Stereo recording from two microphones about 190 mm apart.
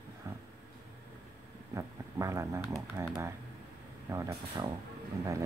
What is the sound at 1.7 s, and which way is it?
Speech, 15° right (ahead or behind).